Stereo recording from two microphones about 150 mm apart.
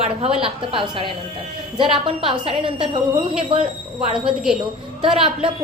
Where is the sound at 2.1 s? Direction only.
35° right (ahead or behind).